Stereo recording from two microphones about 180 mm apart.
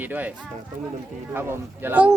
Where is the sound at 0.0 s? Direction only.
10° right (ahead or behind).